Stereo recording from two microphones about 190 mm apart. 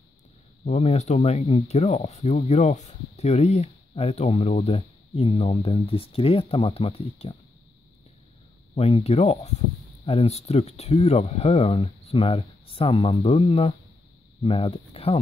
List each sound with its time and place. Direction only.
0.7 s speech: 35° left (ahead or behind)
8.7 s speech: 30° left (ahead or behind)